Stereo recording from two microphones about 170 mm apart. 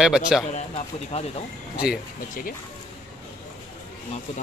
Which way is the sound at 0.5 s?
35° left (ahead or behind).